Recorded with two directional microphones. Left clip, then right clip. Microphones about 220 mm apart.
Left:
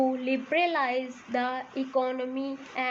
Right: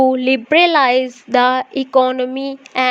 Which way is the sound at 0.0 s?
45° right (ahead or behind).